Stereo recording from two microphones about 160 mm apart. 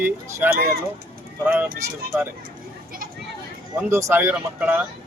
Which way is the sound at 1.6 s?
65° right (ahead or behind).